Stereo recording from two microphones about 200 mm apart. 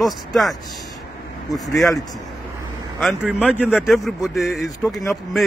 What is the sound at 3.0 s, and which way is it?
Speech, 5° right (ahead or behind).